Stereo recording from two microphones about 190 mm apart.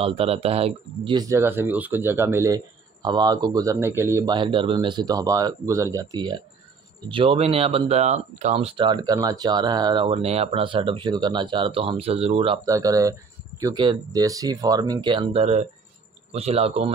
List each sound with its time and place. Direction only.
0.0 s speech: 30° right (ahead or behind)
12.6 s speech: 20° right (ahead or behind)